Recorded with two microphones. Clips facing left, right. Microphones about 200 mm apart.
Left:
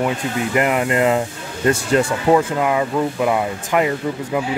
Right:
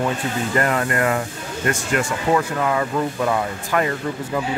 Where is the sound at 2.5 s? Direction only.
15° left (ahead or behind).